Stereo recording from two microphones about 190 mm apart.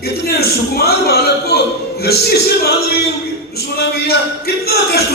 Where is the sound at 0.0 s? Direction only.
55° left (ahead or behind).